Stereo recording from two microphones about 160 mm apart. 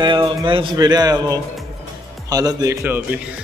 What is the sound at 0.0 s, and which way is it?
A man's voice, 30° right (ahead or behind).